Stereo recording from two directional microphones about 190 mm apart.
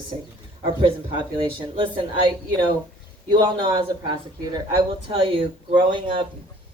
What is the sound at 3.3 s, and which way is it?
A woman's voice, 25° right (ahead or behind).